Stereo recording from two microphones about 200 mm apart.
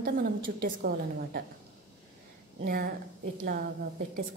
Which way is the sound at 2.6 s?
45° right (ahead or behind).